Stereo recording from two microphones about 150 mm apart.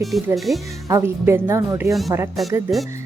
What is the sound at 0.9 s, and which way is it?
Speech, 20° right (ahead or behind).